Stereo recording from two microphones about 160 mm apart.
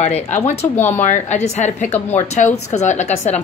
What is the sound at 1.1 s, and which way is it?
A woman's voice, 45° left (ahead or behind).